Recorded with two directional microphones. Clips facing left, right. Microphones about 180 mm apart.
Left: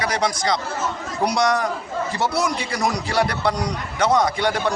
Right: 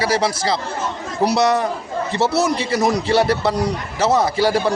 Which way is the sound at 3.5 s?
5° right (ahead or behind).